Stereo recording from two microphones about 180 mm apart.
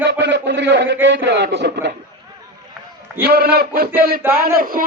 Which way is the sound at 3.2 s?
60° right (ahead or behind).